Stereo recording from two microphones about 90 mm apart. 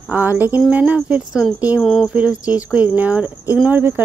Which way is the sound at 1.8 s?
5° left (ahead or behind).